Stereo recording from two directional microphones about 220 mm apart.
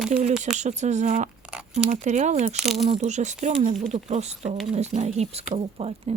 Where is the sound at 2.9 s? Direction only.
30° right (ahead or behind).